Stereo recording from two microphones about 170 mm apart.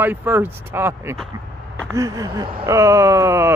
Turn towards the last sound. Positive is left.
turn(degrees=-15)  # may be behind; listen again after turning